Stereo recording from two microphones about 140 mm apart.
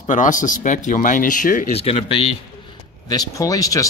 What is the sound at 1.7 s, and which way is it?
Speech, 45° left (ahead or behind).